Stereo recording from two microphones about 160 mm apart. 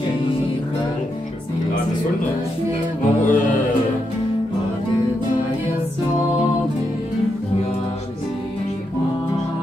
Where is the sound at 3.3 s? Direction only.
55° left (ahead or behind).